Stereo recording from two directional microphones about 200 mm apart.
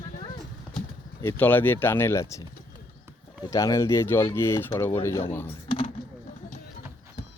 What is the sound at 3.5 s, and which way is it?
Speech, 15° left (ahead or behind).